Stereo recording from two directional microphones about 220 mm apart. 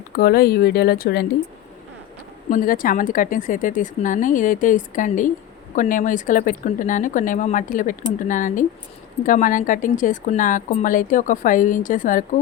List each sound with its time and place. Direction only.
0.2 s speech: 45° left (ahead or behind)
2.5 s speech: 40° left (ahead or behind)